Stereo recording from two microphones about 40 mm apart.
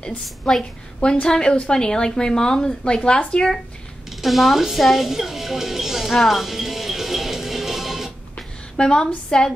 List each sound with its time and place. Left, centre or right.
0.5 s a woman's voice: centre
4.2 s a woman's voice: centre
6.1 s music: centre
8.7 s a woman's voice: centre